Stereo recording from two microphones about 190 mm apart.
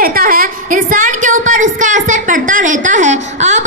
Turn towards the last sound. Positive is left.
turn(degrees=-40)  # may be behind; listen again after turning